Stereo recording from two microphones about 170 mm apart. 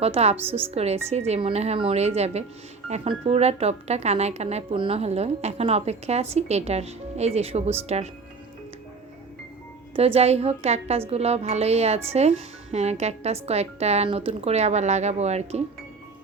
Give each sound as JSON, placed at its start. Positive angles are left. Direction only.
{"t": 0.0, "sound": "speech", "side_deg": -35}
{"t": 9.9, "sound": "speech", "side_deg": -35}